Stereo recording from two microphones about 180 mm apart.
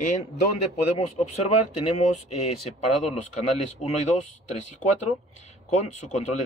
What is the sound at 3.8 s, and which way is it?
Speech, 40° left (ahead or behind).